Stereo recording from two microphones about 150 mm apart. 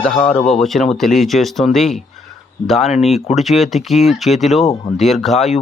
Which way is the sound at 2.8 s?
45° left (ahead or behind).